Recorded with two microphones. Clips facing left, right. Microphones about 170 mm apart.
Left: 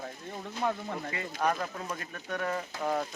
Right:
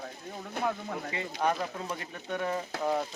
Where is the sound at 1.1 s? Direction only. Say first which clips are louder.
Right 1 dB; 20° right (ahead or behind).